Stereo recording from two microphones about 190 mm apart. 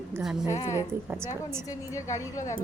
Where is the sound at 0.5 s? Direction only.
35° left (ahead or behind).